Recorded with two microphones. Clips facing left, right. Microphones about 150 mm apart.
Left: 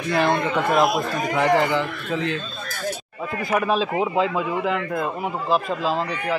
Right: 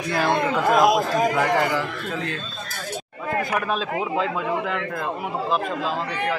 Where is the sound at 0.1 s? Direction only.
Centre (ahead or behind).